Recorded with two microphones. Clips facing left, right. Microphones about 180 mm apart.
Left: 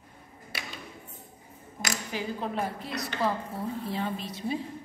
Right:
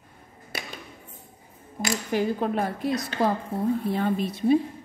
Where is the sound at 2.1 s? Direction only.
55° right (ahead or behind).